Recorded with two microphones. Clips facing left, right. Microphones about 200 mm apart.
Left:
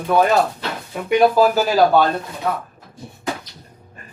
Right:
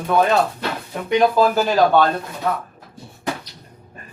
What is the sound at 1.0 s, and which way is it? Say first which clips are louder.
Speech: left 2 dB; 10° left (ahead or behind).